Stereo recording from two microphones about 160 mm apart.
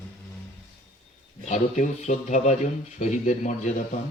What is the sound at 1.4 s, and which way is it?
Speech, 50° left (ahead or behind).